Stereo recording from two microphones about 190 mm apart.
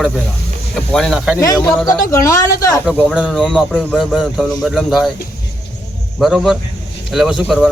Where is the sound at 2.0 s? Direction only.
15° left (ahead or behind).